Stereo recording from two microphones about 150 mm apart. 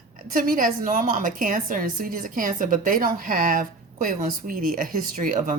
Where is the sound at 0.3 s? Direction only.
65° right (ahead or behind).